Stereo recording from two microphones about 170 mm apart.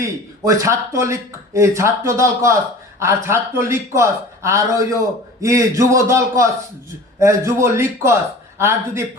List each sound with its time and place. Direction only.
0.0 s speech: 20° right (ahead or behind)